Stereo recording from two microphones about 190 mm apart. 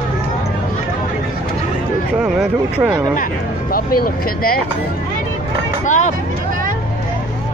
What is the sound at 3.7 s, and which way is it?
Speech, 50° left (ahead or behind).